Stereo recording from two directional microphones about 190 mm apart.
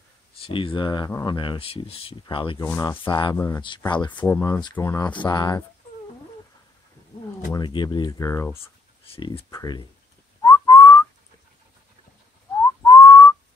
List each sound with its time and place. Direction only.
0.4 s speech: 25° left (ahead or behind)
2.6 s speech: 15° left (ahead or behind)
3.0 s speech: 25° left (ahead or behind)
7.5 s speech: 25° left (ahead or behind)
9.1 s speech: 30° left (ahead or behind)
10.4 s whistling: 20° left (ahead or behind)
12.8 s whistling: 15° left (ahead or behind)